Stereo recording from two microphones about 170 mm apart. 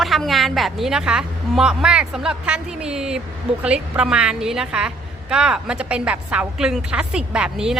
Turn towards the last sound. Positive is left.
turn(degrees=-5)  # may be behind; listen again after turning